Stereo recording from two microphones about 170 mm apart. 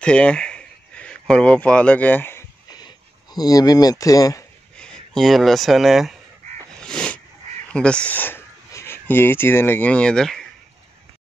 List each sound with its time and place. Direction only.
0.0 s speech: 5° left (ahead or behind)
4.7 s speech: 5° left (ahead or behind)
6.8 s a sound: 5° left (ahead or behind)
7.7 s speech: 5° left (ahead or behind)